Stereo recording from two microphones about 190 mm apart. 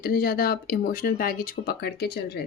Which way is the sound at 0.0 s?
50° left (ahead or behind).